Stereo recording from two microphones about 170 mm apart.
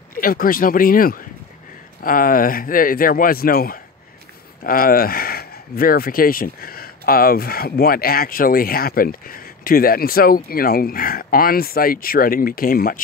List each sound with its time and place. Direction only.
0.1 s speech: 55° left (ahead or behind)